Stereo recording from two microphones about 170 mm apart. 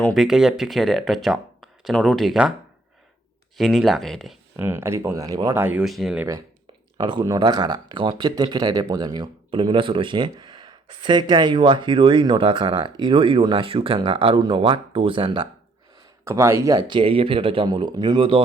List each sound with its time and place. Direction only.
0.0 s speech: centre (ahead or behind)
3.6 s speech: centre (ahead or behind)
4.5 s speech: 15° right (ahead or behind)
6.9 s speech: 25° right (ahead or behind)
16.2 s speech: 15° right (ahead or behind)